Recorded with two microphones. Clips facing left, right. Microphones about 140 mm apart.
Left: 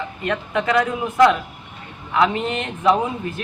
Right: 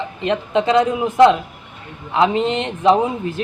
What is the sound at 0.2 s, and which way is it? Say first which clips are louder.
Speech: right 5 dB; 25° right (ahead or behind).